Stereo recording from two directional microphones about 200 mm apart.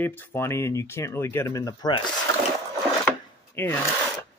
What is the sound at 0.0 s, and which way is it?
Speech, 10° left (ahead or behind).